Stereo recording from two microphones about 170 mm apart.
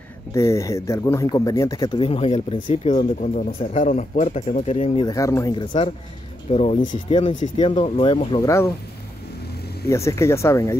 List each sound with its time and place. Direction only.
0.3 s speech: 15° left (ahead or behind); by 5.0 s 40° left (ahead or behind)
5.0 s speech: 20° left (ahead or behind)
6.5 s speech: 40° left (ahead or behind)
8.5 s speech: 15° left (ahead or behind)
9.8 s speech: 15° left (ahead or behind)